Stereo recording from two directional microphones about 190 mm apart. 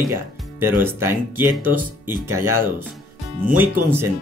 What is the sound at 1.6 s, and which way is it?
Speech, 45° right (ahead or behind).